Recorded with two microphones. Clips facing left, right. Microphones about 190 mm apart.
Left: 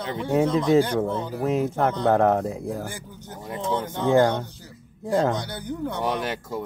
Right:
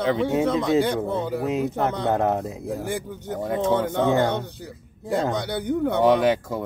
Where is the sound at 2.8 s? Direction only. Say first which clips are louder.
Right 7 dB; 60° right (ahead or behind).